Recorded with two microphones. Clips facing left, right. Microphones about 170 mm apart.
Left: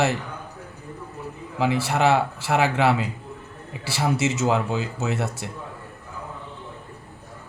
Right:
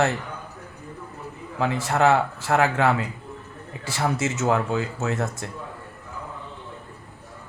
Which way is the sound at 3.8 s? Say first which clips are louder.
Left 2 dB; 90° left.